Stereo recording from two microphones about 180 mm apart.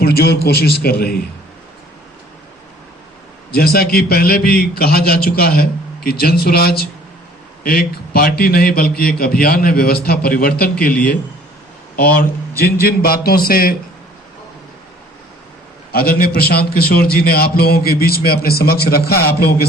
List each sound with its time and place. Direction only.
0.0 s a man's voice: 60° left (ahead or behind)
3.5 s a man's voice: 60° left (ahead or behind)
11.9 s a man's voice: 60° left (ahead or behind)
15.9 s a man's voice: 60° left (ahead or behind)